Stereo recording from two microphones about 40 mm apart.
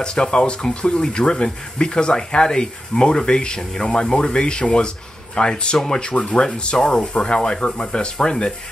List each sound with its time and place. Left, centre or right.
0.0 s speech: left